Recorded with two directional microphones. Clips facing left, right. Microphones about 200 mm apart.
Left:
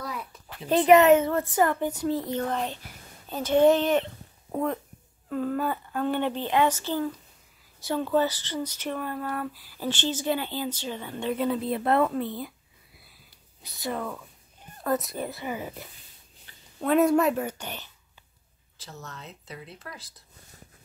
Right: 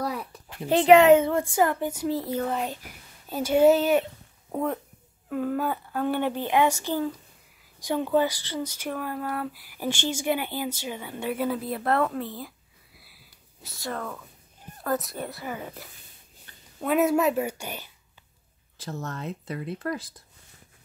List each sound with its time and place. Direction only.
0.7 s speech: 10° right (ahead or behind)
13.6 s speech: centre (ahead or behind)
15.4 s speech: 10° left (ahead or behind)
16.8 s speech: 5° right (ahead or behind)
18.8 s speech: 50° right (ahead or behind)